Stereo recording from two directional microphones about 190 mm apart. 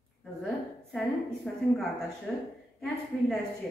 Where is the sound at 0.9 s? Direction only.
Centre (ahead or behind).